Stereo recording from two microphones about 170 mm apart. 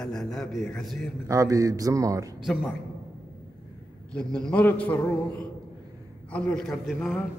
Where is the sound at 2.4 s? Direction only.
Centre (ahead or behind).